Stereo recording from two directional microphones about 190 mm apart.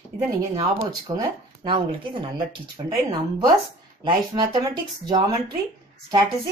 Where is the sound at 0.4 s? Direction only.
20° right (ahead or behind).